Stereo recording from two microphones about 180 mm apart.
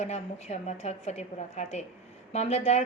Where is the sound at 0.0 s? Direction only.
40° left (ahead or behind).